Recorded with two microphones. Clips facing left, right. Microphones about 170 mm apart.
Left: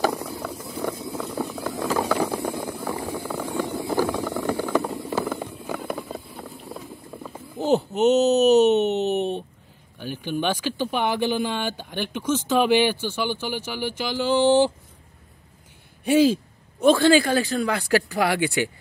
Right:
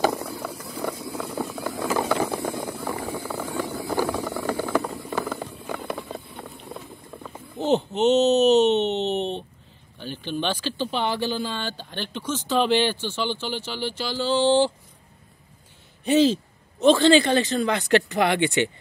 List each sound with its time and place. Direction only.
0.0 s boiling: 15° right (ahead or behind)
0.6 s vehicle: 5° left (ahead or behind)
1.8 s ratchet: 5° right (ahead or behind)
2.7 s a sound: 10° left (ahead or behind)
3.3 s vehicle: centre (ahead or behind)
3.6 s vehicle: 15° left (ahead or behind)
3.9 s vehicle: 10° right (ahead or behind)
4.5 s a sound: 10° left (ahead or behind)
9.9 s speech: 10° left (ahead or behind)
16.0 s speech: 10° left (ahead or behind)